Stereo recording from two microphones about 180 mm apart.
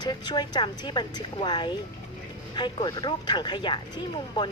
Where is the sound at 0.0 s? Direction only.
25° left (ahead or behind).